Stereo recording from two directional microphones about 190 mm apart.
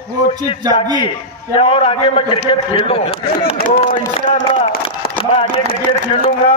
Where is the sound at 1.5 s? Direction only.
30° left (ahead or behind).